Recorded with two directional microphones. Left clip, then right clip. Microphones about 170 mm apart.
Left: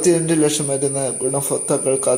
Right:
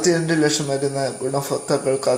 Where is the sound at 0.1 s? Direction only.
20° left (ahead or behind).